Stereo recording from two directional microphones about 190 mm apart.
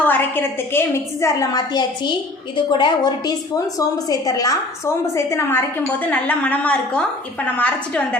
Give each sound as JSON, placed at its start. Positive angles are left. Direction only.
{"t": 0.0, "sound": "a woman's voice", "side_deg": 10}